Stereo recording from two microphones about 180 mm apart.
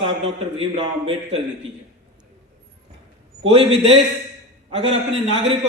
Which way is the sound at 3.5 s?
35° right (ahead or behind).